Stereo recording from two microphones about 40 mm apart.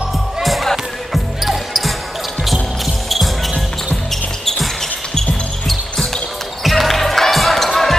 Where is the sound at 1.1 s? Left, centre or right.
Centre.